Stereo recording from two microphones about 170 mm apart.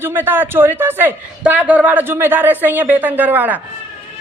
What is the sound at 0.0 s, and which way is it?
A man's voice, 10° right (ahead or behind).